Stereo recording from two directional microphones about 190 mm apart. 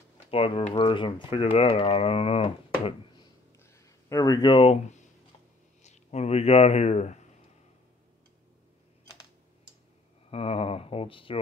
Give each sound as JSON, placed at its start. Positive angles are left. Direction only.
{"t": 0.3, "sound": "speech", "side_deg": 30}
{"t": 3.5, "sound": "a sound", "side_deg": 15}
{"t": 5.8, "sound": "speech", "side_deg": 35}
{"t": 10.3, "sound": "speech", "side_deg": 30}